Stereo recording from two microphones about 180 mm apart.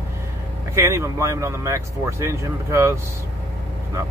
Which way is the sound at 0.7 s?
15° right (ahead or behind).